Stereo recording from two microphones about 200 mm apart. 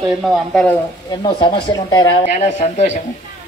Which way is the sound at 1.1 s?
20° left (ahead or behind).